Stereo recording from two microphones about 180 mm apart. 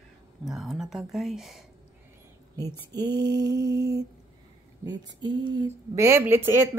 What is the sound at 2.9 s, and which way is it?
Mantra, 20° right (ahead or behind).